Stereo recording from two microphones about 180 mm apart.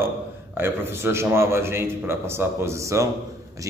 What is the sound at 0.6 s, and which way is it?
A man's voice, 10° right (ahead or behind).